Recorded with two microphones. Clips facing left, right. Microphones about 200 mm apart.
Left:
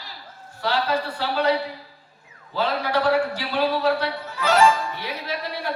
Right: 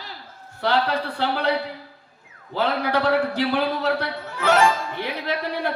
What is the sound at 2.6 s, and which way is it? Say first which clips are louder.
A man's voice: even; 55° right (ahead or behind).